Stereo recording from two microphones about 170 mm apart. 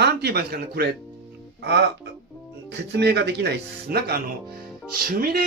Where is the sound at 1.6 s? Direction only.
80° right.